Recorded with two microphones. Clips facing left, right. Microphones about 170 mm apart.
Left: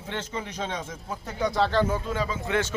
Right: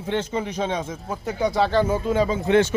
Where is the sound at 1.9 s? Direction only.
20° right (ahead or behind).